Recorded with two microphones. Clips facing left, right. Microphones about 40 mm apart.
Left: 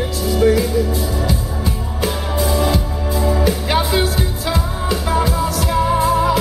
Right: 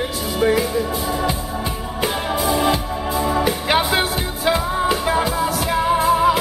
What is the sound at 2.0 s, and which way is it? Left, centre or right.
Music, right.